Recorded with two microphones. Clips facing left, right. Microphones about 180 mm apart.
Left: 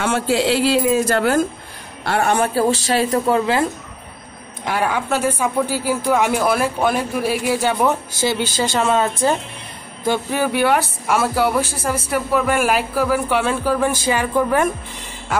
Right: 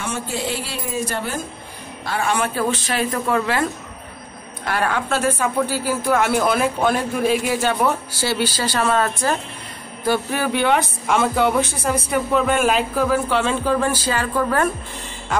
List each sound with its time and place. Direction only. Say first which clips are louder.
0.0 s a woman's voice: left 8 dB; 90° left
2.0 s speech: left 4 dB; 60° left (ahead or behind)
2.6 s a woman's voice: left 4 dB; 30° left (ahead or behind)
4.6 s speech: left 1 dB; 10° left (ahead or behind)